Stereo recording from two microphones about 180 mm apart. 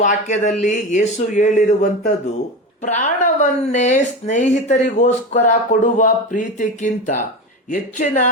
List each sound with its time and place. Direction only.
0.0 s speech: 45° left (ahead or behind)